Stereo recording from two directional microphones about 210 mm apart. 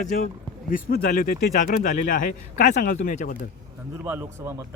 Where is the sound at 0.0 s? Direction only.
35° left (ahead or behind).